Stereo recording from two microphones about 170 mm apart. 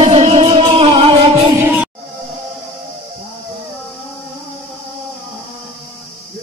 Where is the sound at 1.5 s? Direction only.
10° right (ahead or behind).